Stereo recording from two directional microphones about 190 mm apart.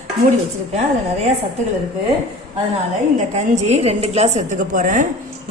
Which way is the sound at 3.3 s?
35° right (ahead or behind).